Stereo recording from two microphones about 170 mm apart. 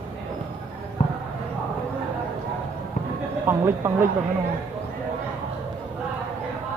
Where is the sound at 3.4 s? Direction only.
15° right (ahead or behind).